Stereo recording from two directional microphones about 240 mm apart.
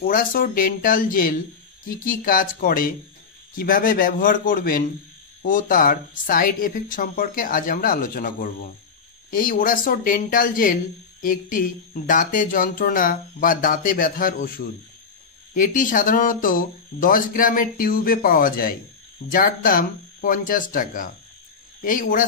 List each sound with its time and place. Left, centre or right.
0.0 s speech: left